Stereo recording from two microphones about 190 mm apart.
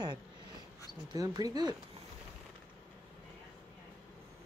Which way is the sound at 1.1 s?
20° right (ahead or behind).